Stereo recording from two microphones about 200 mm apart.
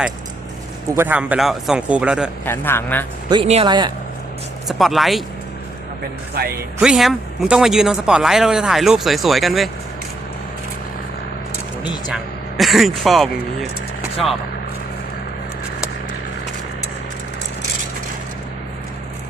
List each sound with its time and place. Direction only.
0.9 s speech: 10° right (ahead or behind)
2.4 s a man's voice: 10° left (ahead or behind)
3.2 s speech: 30° right (ahead or behind)
4.7 s speech: centre (ahead or behind)
6.3 s speech: 50° right (ahead or behind)
6.8 s speech: centre (ahead or behind)
12.1 s speech: centre (ahead or behind)